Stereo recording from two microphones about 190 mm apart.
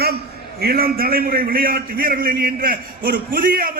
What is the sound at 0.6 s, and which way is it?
A man's voice, 55° right (ahead or behind).